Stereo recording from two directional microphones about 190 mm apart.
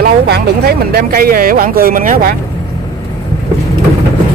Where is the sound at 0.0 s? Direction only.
55° right (ahead or behind).